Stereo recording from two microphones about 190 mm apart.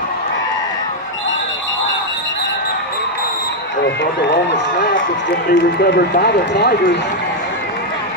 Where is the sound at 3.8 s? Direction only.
65° left (ahead or behind).